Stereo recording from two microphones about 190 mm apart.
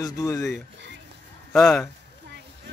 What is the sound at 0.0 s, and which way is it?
Speech, 15° left (ahead or behind).